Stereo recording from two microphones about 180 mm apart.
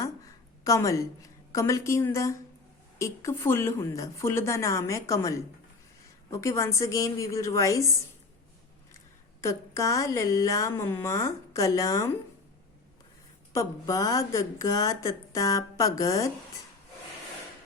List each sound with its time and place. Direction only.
0.6 s a woman's voice: 15° left (ahead or behind)
6.3 s a woman's voice: 15° left (ahead or behind)
9.4 s a woman's voice: 15° left (ahead or behind)
13.5 s speech: 15° left (ahead or behind)